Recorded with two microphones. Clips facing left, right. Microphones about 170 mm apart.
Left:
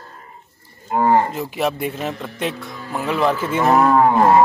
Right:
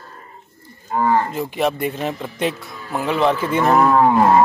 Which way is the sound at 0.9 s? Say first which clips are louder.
Left 2 dB; 25° left (ahead or behind).